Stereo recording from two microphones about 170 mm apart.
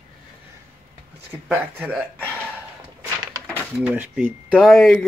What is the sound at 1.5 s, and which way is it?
Speech, 10° right (ahead or behind).